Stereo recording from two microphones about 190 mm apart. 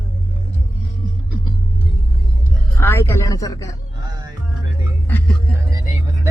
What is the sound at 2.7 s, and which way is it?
Speech, 15° left (ahead or behind).